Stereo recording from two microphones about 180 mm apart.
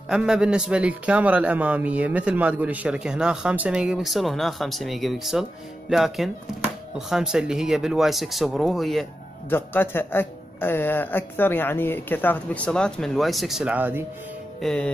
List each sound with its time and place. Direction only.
0.1 s a man's voice: 5° right (ahead or behind)
9.5 s speech: 10° left (ahead or behind); by 14.0 s 10° right (ahead or behind)
14.6 s a man's voice: 5° left (ahead or behind)